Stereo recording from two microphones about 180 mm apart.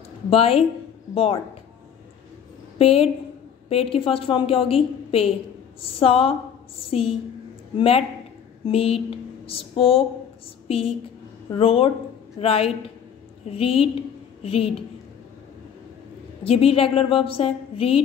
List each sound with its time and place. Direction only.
0.3 s a woman's voice: 30° left (ahead or behind)
2.8 s a woman's voice: 30° left (ahead or behind)
16.4 s a woman's voice: 35° left (ahead or behind)